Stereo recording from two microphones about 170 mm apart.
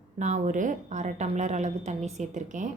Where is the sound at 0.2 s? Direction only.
45° right (ahead or behind).